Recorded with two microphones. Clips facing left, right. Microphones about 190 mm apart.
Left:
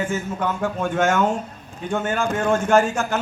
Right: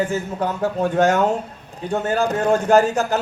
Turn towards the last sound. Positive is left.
turn(degrees=-35)  # may be behind; listen again after turning